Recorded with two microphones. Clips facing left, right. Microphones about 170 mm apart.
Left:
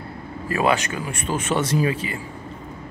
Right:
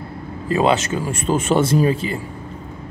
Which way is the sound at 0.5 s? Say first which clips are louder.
Right 4 dB; 20° right (ahead or behind).